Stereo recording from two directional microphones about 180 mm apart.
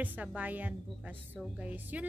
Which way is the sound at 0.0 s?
10° right (ahead or behind).